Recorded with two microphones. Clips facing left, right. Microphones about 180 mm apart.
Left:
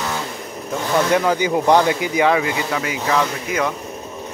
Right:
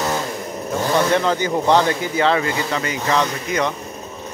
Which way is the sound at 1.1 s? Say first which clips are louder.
Left 1 dB; 10° left (ahead or behind).